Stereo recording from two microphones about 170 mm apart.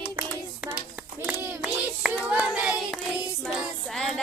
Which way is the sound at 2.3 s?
5° right (ahead or behind).